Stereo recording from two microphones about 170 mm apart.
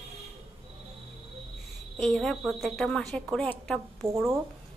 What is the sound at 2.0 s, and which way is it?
A woman's voice, centre (ahead or behind).